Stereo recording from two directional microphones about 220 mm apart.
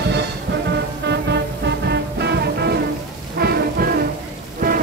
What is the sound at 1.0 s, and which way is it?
Music, 50° right (ahead or behind).